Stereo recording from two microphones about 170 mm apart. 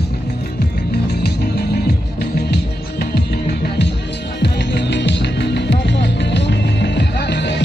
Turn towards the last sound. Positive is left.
turn(degrees=90)